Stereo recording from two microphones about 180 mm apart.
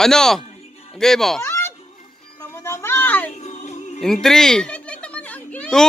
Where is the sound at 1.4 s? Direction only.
15° left (ahead or behind).